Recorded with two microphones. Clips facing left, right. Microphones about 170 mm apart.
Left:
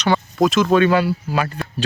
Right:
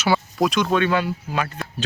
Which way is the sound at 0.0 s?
5° right (ahead or behind).